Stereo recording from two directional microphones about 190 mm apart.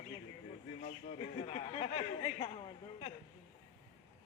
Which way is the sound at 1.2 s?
30° left (ahead or behind).